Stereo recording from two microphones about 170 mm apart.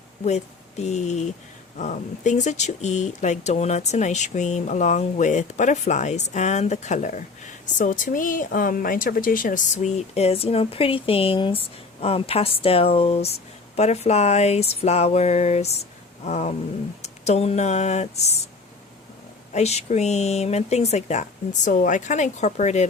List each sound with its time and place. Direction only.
0.3 s speech: 40° left (ahead or behind)
19.5 s speech: 40° left (ahead or behind)